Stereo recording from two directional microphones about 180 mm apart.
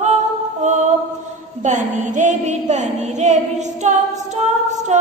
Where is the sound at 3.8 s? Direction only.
40° right (ahead or behind).